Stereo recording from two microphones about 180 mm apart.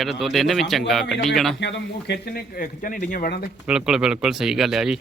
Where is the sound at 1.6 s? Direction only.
75° left (ahead or behind); by 3.5 s 55° left (ahead or behind).